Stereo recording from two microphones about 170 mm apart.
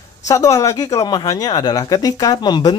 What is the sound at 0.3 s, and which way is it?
Speech, 20° left (ahead or behind).